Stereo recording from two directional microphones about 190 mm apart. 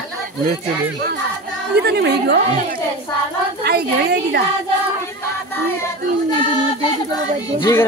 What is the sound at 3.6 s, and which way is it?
Speech, 60° right (ahead or behind).